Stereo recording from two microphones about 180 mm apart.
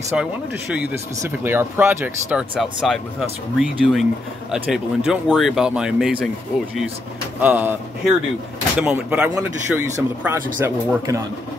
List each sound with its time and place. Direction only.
0.1 s speech: 5° right (ahead or behind)
2.5 s speech: centre (ahead or behind)
7.3 s speech: 10° right (ahead or behind)